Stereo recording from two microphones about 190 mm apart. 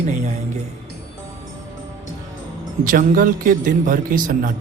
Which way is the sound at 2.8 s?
45° right (ahead or behind).